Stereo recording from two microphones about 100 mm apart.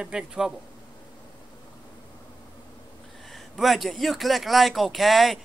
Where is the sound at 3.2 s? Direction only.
Centre (ahead or behind).